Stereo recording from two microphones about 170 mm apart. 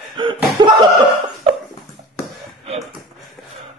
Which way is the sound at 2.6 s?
35° right (ahead or behind).